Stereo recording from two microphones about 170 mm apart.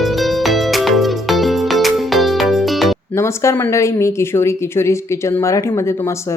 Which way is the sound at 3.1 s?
15° left (ahead or behind).